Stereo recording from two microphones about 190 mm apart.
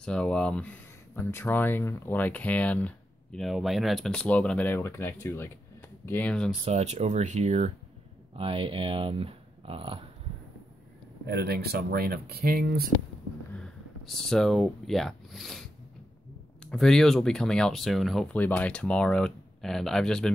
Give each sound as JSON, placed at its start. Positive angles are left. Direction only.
{"t": 0.0, "sound": "speech", "side_deg": 5}
{"t": 6.6, "sound": "speech", "side_deg": -35}
{"t": 11.2, "sound": "speech", "side_deg": -60}
{"t": 13.5, "sound": "speech", "side_deg": 5}
{"t": 16.7, "sound": "speech", "side_deg": 0}